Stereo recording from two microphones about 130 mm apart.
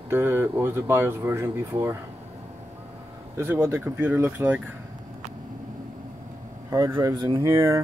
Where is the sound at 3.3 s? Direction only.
20° right (ahead or behind).